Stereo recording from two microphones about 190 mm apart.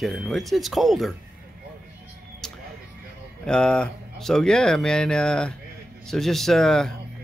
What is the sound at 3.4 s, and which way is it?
Speech, 5° left (ahead or behind).